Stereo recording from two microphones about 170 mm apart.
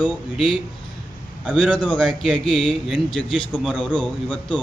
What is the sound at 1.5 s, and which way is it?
Speech, 5° left (ahead or behind).